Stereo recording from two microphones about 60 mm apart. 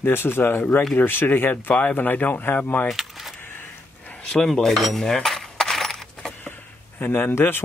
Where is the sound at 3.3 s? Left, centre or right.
Left.